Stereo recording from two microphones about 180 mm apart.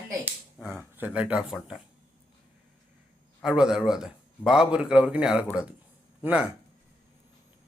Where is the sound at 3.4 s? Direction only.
5° right (ahead or behind).